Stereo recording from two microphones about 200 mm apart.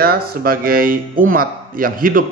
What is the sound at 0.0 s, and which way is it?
Speech, 50° right (ahead or behind).